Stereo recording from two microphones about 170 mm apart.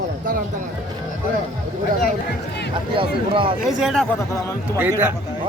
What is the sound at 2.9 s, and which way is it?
Speech, 30° right (ahead or behind).